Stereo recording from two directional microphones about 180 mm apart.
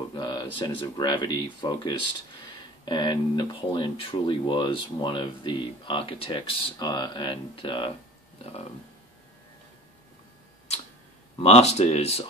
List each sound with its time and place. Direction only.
0.1 s speech: 25° left (ahead or behind)
11.3 s speech: 35° left (ahead or behind)